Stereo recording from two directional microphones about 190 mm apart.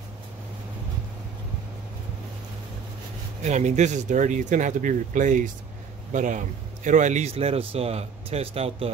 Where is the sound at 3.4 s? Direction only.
40° right (ahead or behind).